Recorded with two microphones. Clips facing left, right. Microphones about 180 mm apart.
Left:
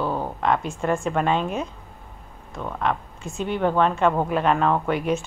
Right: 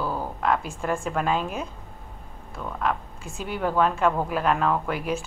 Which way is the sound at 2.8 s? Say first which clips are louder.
Left 1 dB; 5° right (ahead or behind).